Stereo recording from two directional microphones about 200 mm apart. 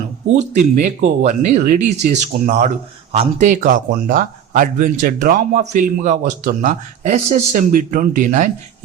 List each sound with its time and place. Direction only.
0.3 s speech: 35° right (ahead or behind)